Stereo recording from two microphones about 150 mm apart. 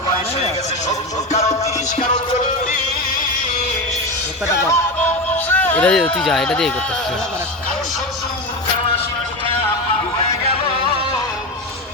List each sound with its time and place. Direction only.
0.4 s music: 50° left (ahead or behind)
4.7 s music: 15° left (ahead or behind)